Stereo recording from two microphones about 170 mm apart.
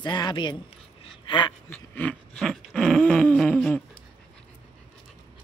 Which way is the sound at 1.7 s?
10° left (ahead or behind).